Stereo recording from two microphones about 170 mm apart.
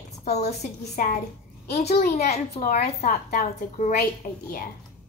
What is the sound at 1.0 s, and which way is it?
Speech, 55° left (ahead or behind).